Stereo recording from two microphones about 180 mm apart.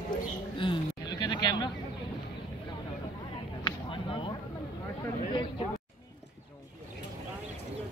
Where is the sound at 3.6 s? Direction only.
30° left (ahead or behind).